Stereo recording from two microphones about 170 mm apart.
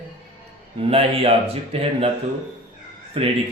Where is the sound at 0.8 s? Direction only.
35° right (ahead or behind).